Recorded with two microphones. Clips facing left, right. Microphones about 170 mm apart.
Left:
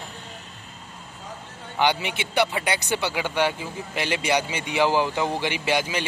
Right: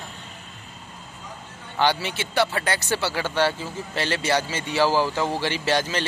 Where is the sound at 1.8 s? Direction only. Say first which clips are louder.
Even; 15° left (ahead or behind).